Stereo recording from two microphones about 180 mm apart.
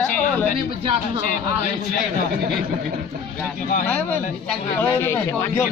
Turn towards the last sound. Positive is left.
turn(degrees=15)  # may be behind; listen again after turning